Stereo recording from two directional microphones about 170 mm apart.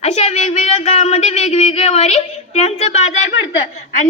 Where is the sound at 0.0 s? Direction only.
40° left (ahead or behind).